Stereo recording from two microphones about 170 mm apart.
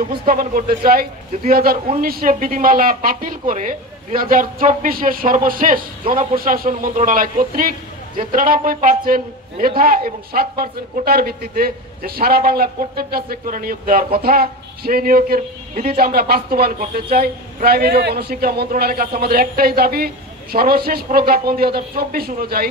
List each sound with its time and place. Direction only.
0.3 s speech: 55° right (ahead or behind)